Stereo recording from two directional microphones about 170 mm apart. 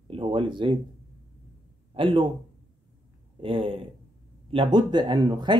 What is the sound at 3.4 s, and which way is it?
Speech, 30° right (ahead or behind).